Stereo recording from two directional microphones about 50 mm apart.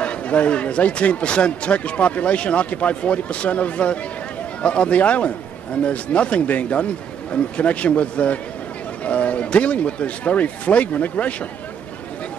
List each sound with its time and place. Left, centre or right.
0.0 s a man's voice: left